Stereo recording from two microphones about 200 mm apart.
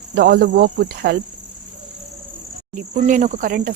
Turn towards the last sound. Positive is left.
turn(degrees=-45)  # may be behind; listen again after turning